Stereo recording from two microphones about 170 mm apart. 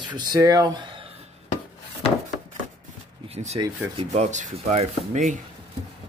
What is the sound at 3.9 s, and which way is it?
Speech, 40° right (ahead or behind).